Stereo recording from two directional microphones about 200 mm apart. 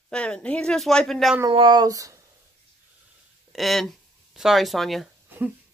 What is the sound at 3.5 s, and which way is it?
Speech, centre (ahead or behind).